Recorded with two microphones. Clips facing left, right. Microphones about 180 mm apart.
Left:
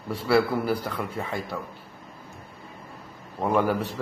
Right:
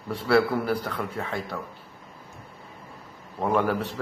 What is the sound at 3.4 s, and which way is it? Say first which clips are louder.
Speech: left 1 dB; 5° left (ahead or behind).